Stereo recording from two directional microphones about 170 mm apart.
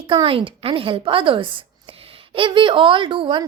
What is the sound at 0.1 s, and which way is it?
A woman's voice, 30° right (ahead or behind).